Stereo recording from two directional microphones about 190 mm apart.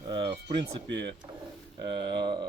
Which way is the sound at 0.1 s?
25° right (ahead or behind).